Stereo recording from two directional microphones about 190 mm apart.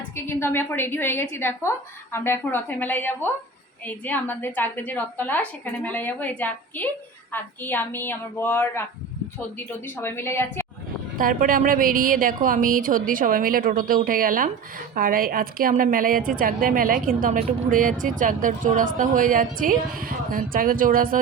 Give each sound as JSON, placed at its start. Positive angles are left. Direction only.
{"t": 0.2, "sound": "a woman's voice", "side_deg": 15}
{"t": 9.8, "sound": "a woman's voice", "side_deg": 15}
{"t": 11.2, "sound": "a woman's voice", "side_deg": -45}